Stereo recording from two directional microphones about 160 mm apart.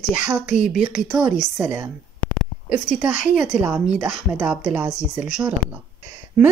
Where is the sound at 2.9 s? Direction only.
5° right (ahead or behind).